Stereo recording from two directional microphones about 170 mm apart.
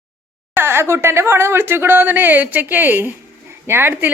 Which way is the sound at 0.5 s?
15° right (ahead or behind).